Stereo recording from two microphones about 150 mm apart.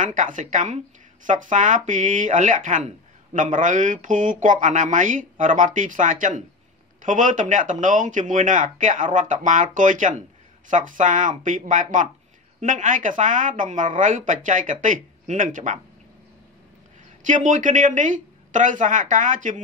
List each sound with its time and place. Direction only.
0.0 s speech: 60° right (ahead or behind)
17.3 s speech: 55° right (ahead or behind)